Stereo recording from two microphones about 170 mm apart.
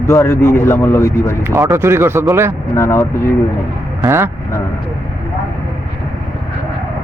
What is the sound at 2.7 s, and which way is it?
Speech, 15° left (ahead or behind).